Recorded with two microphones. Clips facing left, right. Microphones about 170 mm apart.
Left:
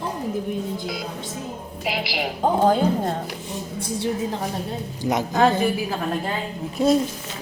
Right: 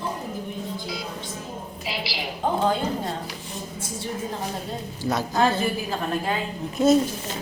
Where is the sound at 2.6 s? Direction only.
45° left (ahead or behind).